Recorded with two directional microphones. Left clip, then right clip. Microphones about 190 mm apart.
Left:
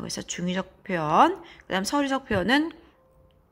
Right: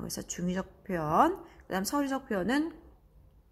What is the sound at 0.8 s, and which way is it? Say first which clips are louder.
A woman's voice: left 6 dB; 15° left (ahead or behind).